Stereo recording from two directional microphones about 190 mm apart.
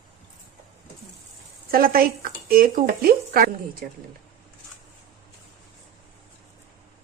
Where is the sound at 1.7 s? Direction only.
50° right (ahead or behind).